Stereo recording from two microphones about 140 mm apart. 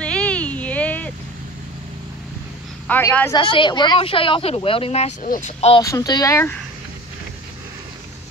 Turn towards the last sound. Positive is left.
turn(degrees=20)  # may be behind; listen again after turning